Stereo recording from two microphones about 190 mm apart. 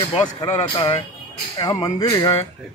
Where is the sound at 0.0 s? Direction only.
25° left (ahead or behind).